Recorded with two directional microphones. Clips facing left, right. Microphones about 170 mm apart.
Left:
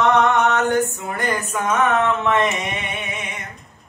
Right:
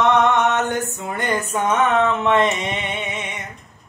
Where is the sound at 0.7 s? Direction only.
25° right (ahead or behind).